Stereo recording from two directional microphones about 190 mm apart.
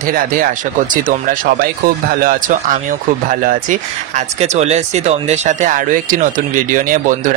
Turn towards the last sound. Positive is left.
turn(degrees=-45)  # may be behind; listen again after turning